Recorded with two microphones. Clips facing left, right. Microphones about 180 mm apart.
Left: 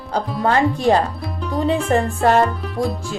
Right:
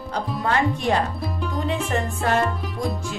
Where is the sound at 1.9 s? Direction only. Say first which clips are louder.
Left 8 dB; 35° left (ahead or behind).